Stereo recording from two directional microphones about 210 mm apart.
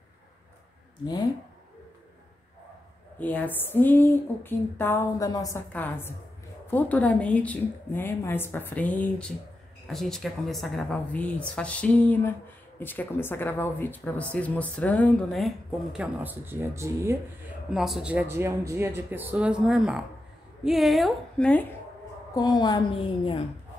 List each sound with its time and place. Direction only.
3.2 s speech: 10° left (ahead or behind); by 17.2 s 15° right (ahead or behind)
17.6 s speech: centre (ahead or behind)
22.3 s a woman's voice: 20° left (ahead or behind)